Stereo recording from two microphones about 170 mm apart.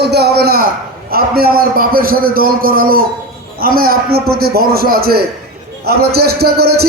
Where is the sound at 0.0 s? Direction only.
75° right (ahead or behind).